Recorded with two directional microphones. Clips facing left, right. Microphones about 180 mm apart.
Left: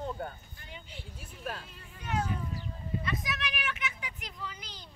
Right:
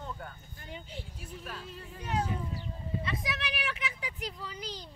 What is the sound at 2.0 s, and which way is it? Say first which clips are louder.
Speech: even; 30° right (ahead or behind).